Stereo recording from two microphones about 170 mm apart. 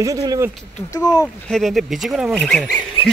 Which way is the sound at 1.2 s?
Centre (ahead or behind).